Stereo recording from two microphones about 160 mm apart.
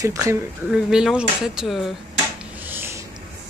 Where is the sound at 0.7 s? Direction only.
5° right (ahead or behind).